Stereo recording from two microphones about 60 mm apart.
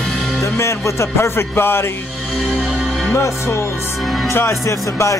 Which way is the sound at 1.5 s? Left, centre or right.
Left.